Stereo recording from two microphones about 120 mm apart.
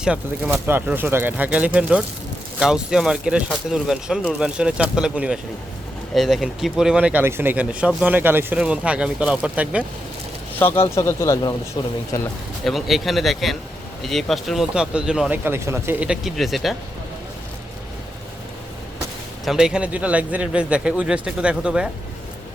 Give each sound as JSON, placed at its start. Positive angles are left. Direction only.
{"t": 0.0, "sound": "speech", "side_deg": -5}
{"t": 0.5, "sound": "speech", "side_deg": -15}
{"t": 10.6, "sound": "speech", "side_deg": 20}
{"t": 11.8, "sound": "speech", "side_deg": 35}
{"t": 12.6, "sound": "speech", "side_deg": 0}
{"t": 15.4, "sound": "a man's voice", "side_deg": -20}
{"t": 16.0, "sound": "speech", "side_deg": 0}
{"t": 19.5, "sound": "speech", "side_deg": -5}